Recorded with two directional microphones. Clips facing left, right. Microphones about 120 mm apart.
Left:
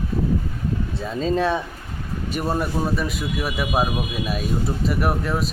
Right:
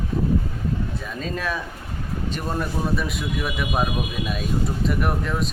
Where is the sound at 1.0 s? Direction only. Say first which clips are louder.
Left 7 dB; 30° left (ahead or behind).